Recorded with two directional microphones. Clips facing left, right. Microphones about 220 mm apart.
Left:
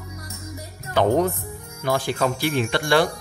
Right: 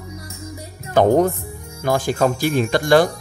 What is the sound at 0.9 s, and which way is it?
Speech, 45° right (ahead or behind).